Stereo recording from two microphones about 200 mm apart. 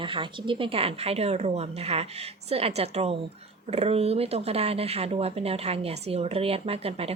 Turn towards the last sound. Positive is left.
turn(degrees=-30)  # may be behind; listen again after turning